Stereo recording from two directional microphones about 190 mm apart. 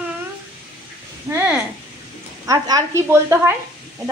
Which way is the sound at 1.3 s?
15° right (ahead or behind).